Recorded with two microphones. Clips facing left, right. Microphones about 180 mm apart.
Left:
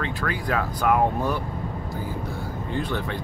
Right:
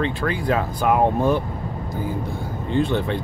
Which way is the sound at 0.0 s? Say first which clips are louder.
Right 5 dB; 25° right (ahead or behind).